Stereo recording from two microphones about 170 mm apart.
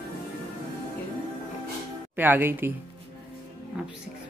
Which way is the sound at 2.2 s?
10° right (ahead or behind).